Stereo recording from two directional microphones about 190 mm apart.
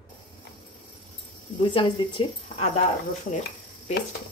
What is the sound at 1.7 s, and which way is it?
Speech, 25° left (ahead or behind).